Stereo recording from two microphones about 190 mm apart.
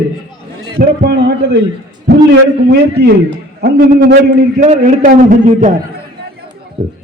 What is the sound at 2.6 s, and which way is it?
A man's voice, 60° right (ahead or behind).